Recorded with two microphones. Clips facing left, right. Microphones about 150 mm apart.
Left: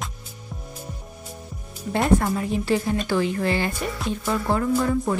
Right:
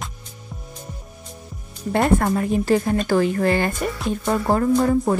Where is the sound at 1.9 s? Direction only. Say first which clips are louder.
Right 2 dB; 55° right (ahead or behind).